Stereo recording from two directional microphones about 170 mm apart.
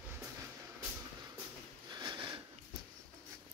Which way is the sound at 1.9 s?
25° right (ahead or behind).